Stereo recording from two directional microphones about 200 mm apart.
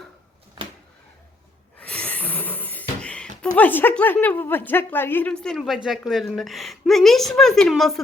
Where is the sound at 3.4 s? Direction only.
10° left (ahead or behind).